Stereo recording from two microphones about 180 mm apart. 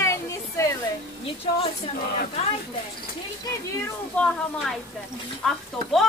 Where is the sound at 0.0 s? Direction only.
15° left (ahead or behind).